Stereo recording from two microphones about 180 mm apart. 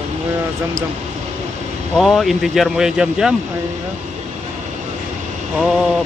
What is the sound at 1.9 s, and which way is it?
Speech, centre (ahead or behind).